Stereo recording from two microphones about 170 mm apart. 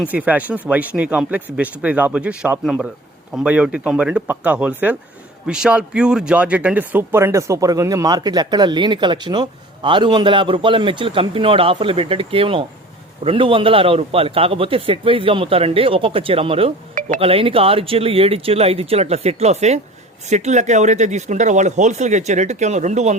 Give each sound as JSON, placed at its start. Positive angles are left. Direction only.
{"t": 0.1, "sound": "a man's voice", "side_deg": -10}
{"t": 16.9, "sound": "music", "side_deg": -50}
{"t": 17.2, "sound": "a man's voice", "side_deg": -35}